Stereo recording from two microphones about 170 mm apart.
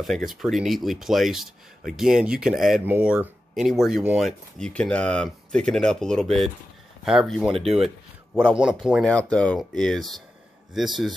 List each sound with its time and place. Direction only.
0.0 s speech: centre (ahead or behind)
9.0 s speech: 5° left (ahead or behind)